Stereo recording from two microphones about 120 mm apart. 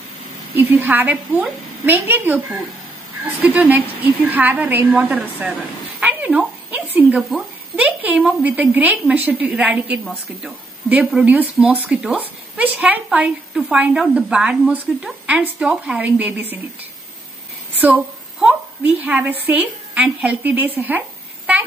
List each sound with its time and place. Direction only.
0.6 s a woman's voice: 15° right (ahead or behind)
3.4 s a woman's voice: 15° right (ahead or behind)
5.9 s a sound: 10° right (ahead or behind)
7.2 s a woman's voice: 5° right (ahead or behind)
17.7 s a sound: 10° right (ahead or behind)
19.4 s a woman's voice: 15° right (ahead or behind)